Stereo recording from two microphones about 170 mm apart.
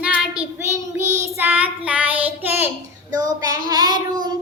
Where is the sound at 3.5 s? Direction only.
20° right (ahead or behind).